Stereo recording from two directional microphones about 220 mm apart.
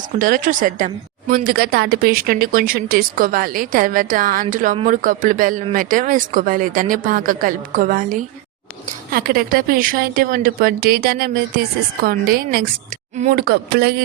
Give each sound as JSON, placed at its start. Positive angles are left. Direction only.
{"t": 0.2, "sound": "a woman's voice", "side_deg": -35}